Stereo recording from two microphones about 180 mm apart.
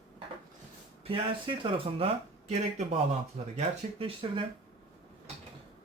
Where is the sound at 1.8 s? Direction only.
30° right (ahead or behind).